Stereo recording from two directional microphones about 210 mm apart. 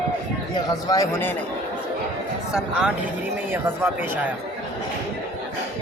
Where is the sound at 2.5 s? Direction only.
5° right (ahead or behind).